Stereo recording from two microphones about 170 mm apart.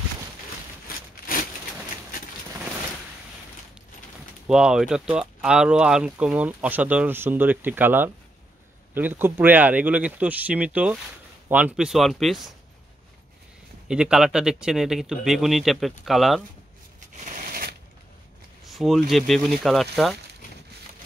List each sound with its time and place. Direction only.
4.5 s speech: 5° right (ahead or behind)
13.8 s speech: 5° right (ahead or behind)
17.2 s shuffling cards: 50° right (ahead or behind)
18.7 s speech: centre (ahead or behind)